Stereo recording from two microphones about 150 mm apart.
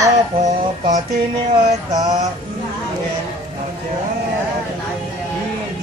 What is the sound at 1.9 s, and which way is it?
Mantra, 25° right (ahead or behind).